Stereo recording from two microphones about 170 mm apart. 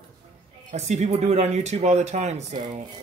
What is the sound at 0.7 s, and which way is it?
Speech, 45° right (ahead or behind).